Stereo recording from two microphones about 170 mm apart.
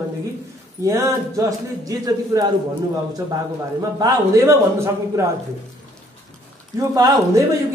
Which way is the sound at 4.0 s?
20° right (ahead or behind).